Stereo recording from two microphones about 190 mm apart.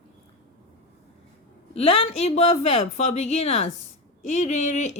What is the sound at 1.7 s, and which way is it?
A woman's voice, 30° left (ahead or behind).